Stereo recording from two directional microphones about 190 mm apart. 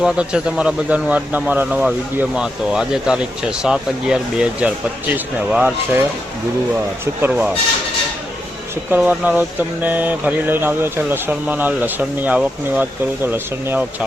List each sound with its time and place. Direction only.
0.0 s speech: 5° right (ahead or behind)
8.9 s speech: 5° right (ahead or behind)